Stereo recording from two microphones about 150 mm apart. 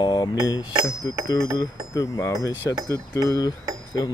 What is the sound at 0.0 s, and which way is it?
Speech, 30° left (ahead or behind).